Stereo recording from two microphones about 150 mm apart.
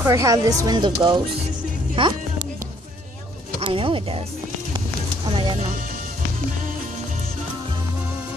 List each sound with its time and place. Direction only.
0.0 s speech: 20° right (ahead or behind); by 2.1 s 35° right (ahead or behind)
3.6 s speech: 35° right (ahead or behind)
4.7 s a sound: 30° right (ahead or behind)